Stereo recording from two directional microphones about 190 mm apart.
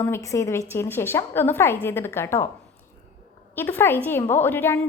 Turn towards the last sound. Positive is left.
turn(degrees=10)  # may be behind; listen again after turning